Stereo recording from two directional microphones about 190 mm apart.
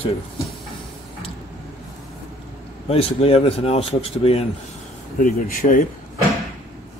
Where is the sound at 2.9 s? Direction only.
30° left (ahead or behind).